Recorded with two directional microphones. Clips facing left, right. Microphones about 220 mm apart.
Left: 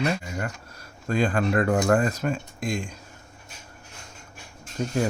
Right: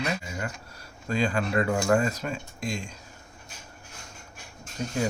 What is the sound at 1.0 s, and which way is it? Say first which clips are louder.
Speech: left 3 dB; 50° left (ahead or behind).